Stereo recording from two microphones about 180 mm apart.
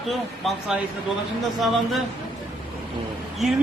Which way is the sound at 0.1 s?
Centre (ahead or behind).